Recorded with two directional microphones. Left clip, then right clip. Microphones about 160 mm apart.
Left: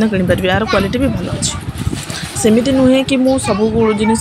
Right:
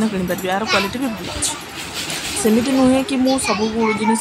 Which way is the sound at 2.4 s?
5° left (ahead or behind).